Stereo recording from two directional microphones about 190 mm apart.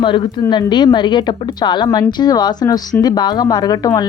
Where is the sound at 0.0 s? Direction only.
25° left (ahead or behind).